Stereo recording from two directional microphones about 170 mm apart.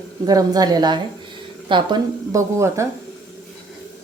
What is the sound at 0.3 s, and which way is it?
Speech, 20° right (ahead or behind).